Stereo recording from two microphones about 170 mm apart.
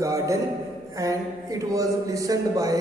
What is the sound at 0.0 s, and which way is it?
Speech, 20° right (ahead or behind).